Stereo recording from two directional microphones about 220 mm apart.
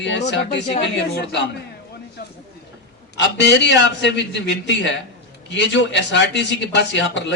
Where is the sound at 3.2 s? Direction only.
55° left (ahead or behind).